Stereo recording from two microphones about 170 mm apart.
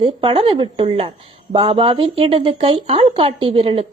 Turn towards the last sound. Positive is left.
turn(degrees=-30)  # may be behind; listen again after turning